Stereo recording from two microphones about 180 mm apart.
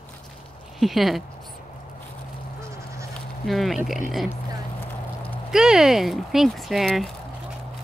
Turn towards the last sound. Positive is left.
turn(degrees=0)  # may be behind; listen again after turning